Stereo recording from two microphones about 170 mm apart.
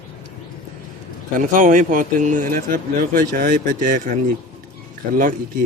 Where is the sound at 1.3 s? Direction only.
50° right (ahead or behind).